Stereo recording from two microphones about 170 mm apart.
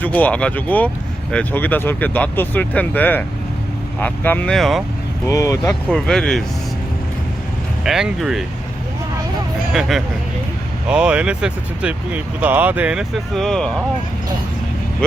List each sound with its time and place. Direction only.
0.0 s speech: 10° left (ahead or behind)
5.3 s speech: 20° left (ahead or behind)
5.6 s speech: 5° left (ahead or behind)
7.9 s speech: centre (ahead or behind)
10.8 s speech: 5° right (ahead or behind)